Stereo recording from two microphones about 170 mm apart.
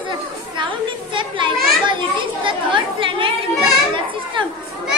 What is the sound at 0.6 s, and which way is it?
Children playing, 30° right (ahead or behind).